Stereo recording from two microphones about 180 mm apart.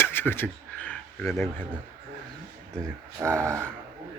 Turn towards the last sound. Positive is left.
turn(degrees=-15)  # may be behind; listen again after turning